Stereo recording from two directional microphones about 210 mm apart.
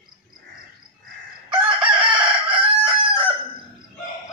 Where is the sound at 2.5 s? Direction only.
25° right (ahead or behind).